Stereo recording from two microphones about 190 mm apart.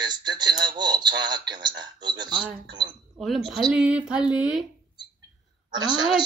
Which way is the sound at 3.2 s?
Centre (ahead or behind).